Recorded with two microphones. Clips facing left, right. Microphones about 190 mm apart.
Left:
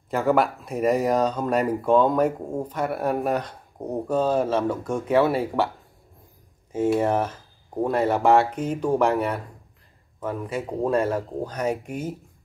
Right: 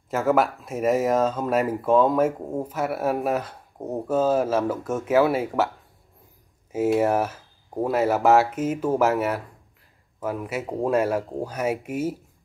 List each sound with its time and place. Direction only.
0.1 s speech: centre (ahead or behind)
6.7 s speech: 5° right (ahead or behind)